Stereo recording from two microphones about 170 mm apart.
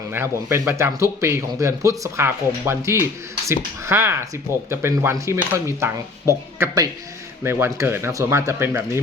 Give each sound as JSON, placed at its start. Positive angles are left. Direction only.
{"t": 0.1, "sound": "speech", "side_deg": -15}